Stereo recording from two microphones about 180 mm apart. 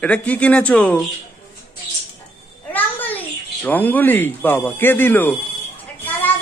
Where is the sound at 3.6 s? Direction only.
10° left (ahead or behind).